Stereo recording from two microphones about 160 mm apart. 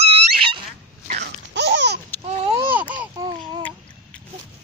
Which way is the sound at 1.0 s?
75° right (ahead or behind).